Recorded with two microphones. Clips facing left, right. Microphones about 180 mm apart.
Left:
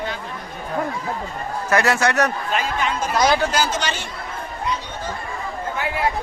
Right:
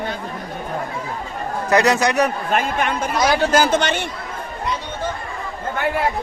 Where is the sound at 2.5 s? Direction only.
55° right (ahead or behind).